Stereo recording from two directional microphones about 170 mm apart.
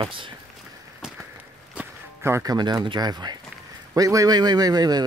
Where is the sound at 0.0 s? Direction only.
30° right (ahead or behind).